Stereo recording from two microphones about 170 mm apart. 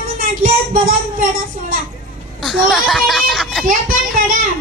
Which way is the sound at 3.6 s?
50° right (ahead or behind).